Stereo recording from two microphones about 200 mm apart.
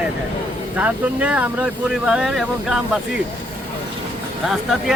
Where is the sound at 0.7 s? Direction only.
5° right (ahead or behind).